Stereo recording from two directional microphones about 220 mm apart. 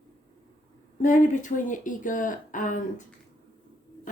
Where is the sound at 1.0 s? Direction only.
35° left (ahead or behind).